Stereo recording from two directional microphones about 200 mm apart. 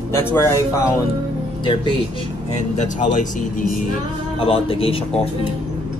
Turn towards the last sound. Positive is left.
turn(degrees=30)  # may be behind; listen again after turning